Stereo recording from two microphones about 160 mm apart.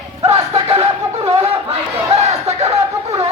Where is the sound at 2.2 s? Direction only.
45° right (ahead or behind).